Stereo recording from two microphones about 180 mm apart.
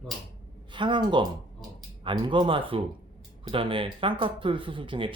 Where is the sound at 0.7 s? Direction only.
25° right (ahead or behind).